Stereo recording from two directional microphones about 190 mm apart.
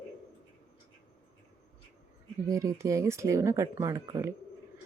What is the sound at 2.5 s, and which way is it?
Speech, 15° right (ahead or behind).